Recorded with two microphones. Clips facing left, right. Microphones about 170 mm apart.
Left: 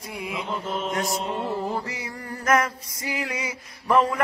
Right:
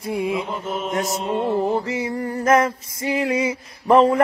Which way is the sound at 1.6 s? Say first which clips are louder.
Right 8 dB; 25° right (ahead or behind).